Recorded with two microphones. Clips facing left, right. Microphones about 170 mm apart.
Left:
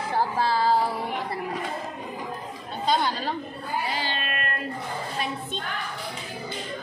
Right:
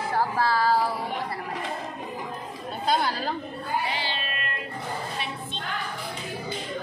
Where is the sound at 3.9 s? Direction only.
45° left (ahead or behind).